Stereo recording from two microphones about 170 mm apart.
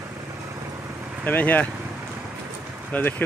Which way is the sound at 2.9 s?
10° left (ahead or behind).